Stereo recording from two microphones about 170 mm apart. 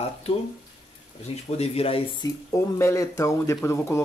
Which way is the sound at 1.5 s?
35° left (ahead or behind).